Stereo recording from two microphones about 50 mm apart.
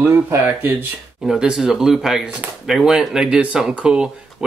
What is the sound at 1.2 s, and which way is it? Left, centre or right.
Speech, centre.